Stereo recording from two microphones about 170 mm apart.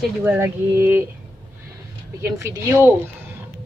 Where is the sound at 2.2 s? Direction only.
15° right (ahead or behind).